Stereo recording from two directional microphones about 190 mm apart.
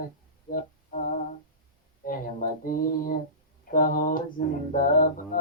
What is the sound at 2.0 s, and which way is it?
Mantra, 45° left (ahead or behind).